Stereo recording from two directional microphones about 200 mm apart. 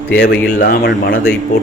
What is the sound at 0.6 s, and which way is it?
Speech, 50° left (ahead or behind).